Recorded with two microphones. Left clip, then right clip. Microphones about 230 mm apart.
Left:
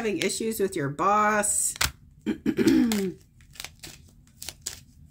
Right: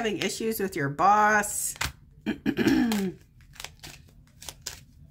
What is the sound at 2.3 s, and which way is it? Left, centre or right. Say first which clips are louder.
Speech: left 2 dB; centre.